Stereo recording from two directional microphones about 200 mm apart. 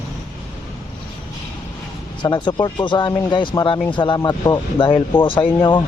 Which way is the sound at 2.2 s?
20° left (ahead or behind).